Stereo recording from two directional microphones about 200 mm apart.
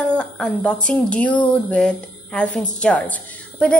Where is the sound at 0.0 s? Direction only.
5° left (ahead or behind).